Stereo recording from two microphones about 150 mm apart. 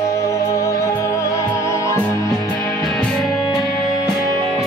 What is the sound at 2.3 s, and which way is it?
Music, 5° left (ahead or behind).